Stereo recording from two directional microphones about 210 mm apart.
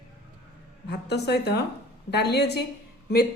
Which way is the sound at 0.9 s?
55° left (ahead or behind).